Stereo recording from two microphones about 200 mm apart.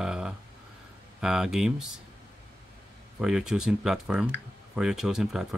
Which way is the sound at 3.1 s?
5° right (ahead or behind).